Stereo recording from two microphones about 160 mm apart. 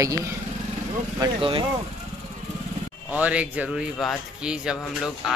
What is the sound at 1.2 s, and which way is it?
Speech, 30° right (ahead or behind).